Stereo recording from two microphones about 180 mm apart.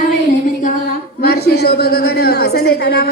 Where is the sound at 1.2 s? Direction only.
60° left (ahead or behind).